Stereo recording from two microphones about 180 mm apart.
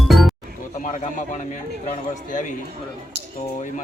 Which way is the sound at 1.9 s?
45° left (ahead or behind).